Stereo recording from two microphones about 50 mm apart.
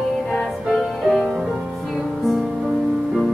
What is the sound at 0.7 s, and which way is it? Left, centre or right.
Music, centre.